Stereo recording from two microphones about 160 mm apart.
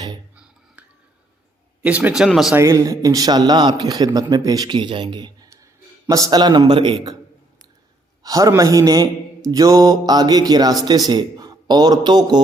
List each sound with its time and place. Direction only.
1.8 s speech: 10° right (ahead or behind)
2.6 s a man's voice: 20° right (ahead or behind)
8.2 s a man's voice: 20° right (ahead or behind)